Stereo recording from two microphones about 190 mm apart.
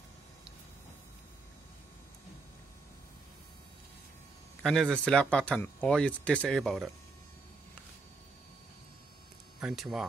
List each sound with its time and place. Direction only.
4.6 s speech: 5° left (ahead or behind)
9.6 s speech: 5° right (ahead or behind)